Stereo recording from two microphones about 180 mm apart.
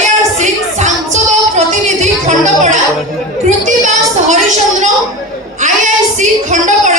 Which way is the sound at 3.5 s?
40° right (ahead or behind).